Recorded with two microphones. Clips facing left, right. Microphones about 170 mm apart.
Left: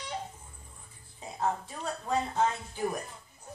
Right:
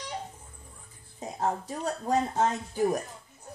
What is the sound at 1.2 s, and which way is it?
Speech, 40° right (ahead or behind).